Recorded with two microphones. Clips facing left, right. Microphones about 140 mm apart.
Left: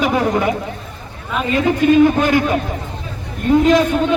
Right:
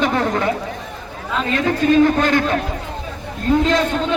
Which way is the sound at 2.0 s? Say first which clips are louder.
Left 2 dB; 15° left (ahead or behind).